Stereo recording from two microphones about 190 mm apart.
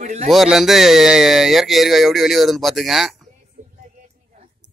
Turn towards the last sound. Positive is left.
turn(degrees=0)  # may be behind; listen again after turning